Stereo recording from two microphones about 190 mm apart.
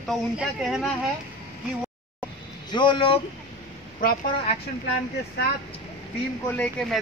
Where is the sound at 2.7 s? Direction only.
25° left (ahead or behind).